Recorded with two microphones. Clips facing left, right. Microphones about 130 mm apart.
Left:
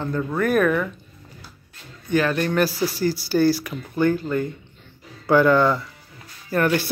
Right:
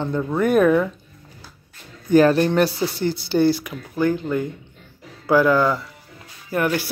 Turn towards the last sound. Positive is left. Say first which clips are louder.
# left 1 dB
turn(degrees=-10)  # may be behind; listen again after turning